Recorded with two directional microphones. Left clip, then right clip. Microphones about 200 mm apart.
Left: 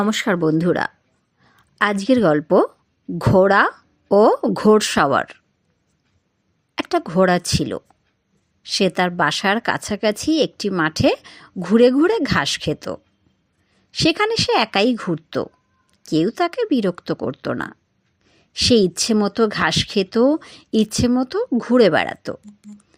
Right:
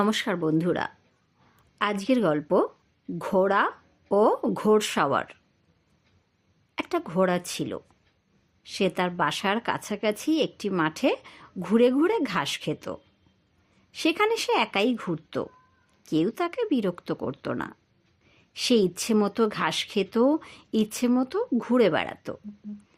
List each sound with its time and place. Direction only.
0.0 s a woman's voice: 25° left (ahead or behind)
6.7 s a woman's voice: 20° left (ahead or behind)